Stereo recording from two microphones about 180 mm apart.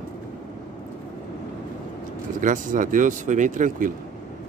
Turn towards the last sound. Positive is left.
turn(degrees=-45)  # may be behind; listen again after turning